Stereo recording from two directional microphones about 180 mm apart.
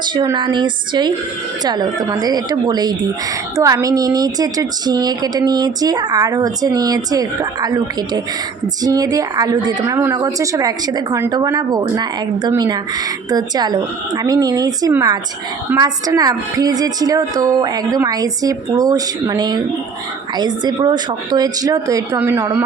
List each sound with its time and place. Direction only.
0.1 s a woman's voice: 25° right (ahead or behind)